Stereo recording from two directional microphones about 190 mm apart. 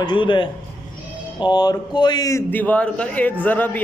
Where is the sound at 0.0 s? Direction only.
25° left (ahead or behind).